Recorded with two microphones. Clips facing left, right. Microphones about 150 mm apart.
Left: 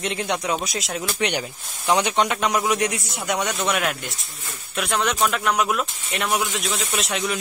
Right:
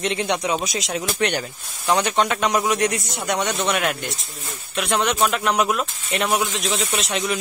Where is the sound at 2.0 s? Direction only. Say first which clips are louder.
Right 1 dB; 15° left (ahead or behind).